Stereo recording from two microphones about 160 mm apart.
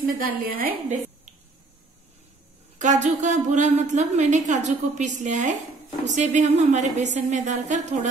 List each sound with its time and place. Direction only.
0.0 s a woman's voice: 60° right (ahead or behind)
2.8 s a woman's voice: 50° right (ahead or behind)